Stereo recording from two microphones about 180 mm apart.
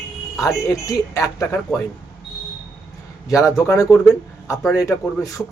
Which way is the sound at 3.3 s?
15° left (ahead or behind).